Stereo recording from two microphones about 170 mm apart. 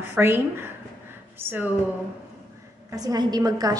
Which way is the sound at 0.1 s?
10° right (ahead or behind).